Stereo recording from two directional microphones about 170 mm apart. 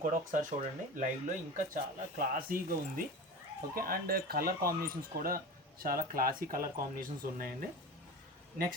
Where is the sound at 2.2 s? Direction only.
55° right (ahead or behind).